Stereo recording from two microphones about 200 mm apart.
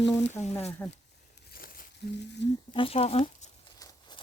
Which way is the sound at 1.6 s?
45° left (ahead or behind).